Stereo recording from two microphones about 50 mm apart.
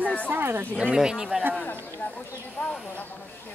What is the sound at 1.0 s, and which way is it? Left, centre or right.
Speech, centre.